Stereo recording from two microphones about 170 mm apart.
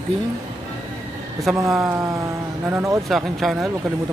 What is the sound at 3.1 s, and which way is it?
Speech, centre (ahead or behind).